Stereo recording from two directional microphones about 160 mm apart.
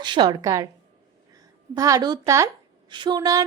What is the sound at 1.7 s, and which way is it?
A woman's voice, 20° right (ahead or behind).